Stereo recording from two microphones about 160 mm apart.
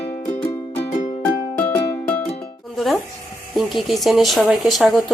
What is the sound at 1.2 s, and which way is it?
Music, 10° left (ahead or behind).